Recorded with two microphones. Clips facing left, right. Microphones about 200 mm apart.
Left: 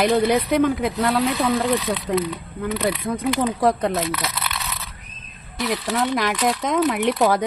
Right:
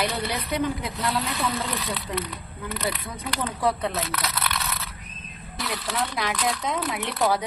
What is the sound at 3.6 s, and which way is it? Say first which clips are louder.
Speech: left 2 dB; 45° left (ahead or behind).